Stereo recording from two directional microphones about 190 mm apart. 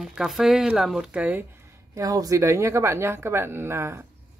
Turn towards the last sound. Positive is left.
turn(degrees=-15)  # may be behind; listen again after turning